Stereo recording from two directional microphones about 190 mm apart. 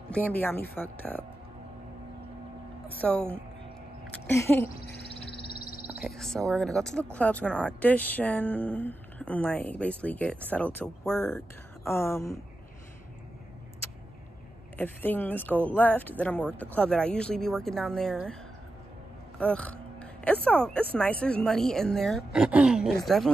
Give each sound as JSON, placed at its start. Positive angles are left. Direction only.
{"t": 0.1, "sound": "speech", "side_deg": 10}
{"t": 3.0, "sound": "speech", "side_deg": 5}
{"t": 5.2, "sound": "crow", "side_deg": 55}
{"t": 5.9, "sound": "speech", "side_deg": 0}
{"t": 14.8, "sound": "speech", "side_deg": 10}
{"t": 19.3, "sound": "speech", "side_deg": 5}